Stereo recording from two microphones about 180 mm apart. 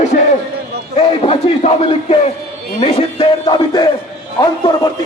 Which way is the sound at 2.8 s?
35° left (ahead or behind).